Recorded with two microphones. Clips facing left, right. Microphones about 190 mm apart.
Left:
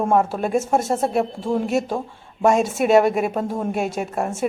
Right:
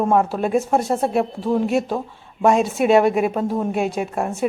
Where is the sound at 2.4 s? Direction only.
45° left (ahead or behind).